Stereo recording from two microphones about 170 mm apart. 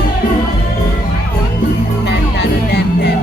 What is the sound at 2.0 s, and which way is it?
Music, 75° left (ahead or behind).